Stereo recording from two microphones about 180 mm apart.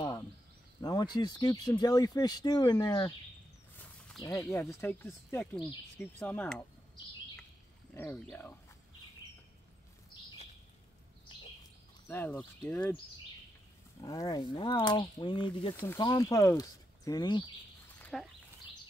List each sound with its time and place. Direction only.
0.7 s speech: 20° left (ahead or behind)
4.2 s speech: 15° left (ahead or behind)
7.9 s speech: 10° left (ahead or behind)
12.1 s speech: 10° left (ahead or behind)
14.0 s speech: 20° left (ahead or behind)
15.7 s speech: 15° left (ahead or behind)
18.0 s speech: centre (ahead or behind)